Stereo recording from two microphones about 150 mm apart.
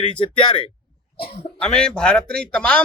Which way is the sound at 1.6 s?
5° left (ahead or behind).